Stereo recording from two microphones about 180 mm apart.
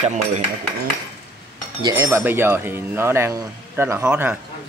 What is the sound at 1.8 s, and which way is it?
Speech, 20° right (ahead or behind).